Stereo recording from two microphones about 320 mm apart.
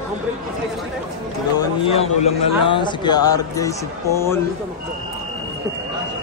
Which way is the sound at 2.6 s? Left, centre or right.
Centre.